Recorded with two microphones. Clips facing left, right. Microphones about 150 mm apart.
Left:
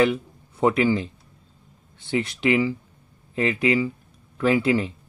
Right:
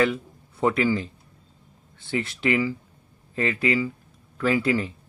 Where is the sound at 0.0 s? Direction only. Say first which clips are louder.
Left 2 dB; 15° left (ahead or behind).